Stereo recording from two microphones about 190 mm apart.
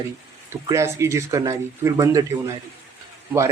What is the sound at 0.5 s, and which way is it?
A man's voice, 15° right (ahead or behind).